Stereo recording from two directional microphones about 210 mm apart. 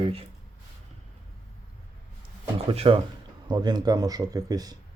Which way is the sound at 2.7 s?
25° right (ahead or behind).